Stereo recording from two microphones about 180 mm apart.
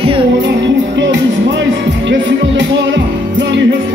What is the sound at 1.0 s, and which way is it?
Music, 90° right.